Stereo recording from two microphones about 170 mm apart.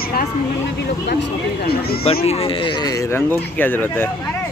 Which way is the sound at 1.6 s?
65° left (ahead or behind).